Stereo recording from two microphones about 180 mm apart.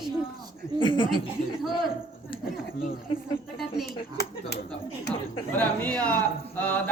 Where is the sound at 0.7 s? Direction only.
25° left (ahead or behind).